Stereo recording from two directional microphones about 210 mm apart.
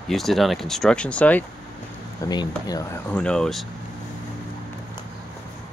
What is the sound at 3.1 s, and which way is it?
Speech, 5° left (ahead or behind).